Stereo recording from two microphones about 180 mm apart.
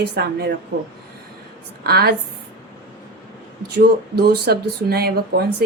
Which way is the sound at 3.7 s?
65° right (ahead or behind).